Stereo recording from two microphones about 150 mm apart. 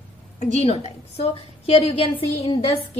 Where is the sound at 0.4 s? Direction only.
45° left (ahead or behind).